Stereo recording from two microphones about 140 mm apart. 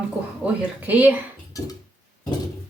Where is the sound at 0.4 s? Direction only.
10° right (ahead or behind).